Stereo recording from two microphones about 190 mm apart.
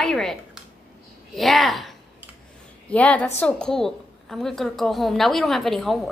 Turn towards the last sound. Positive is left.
turn(degrees=0)  # may be behind; listen again after turning